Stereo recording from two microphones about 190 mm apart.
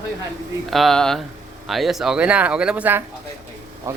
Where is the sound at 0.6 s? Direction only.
Centre (ahead or behind).